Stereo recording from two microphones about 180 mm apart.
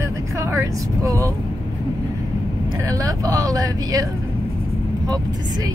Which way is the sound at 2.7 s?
20° right (ahead or behind).